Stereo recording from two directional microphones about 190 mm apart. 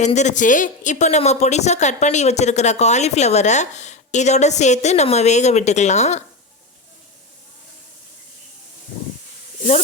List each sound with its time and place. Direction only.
0.0 s speech: 35° left (ahead or behind)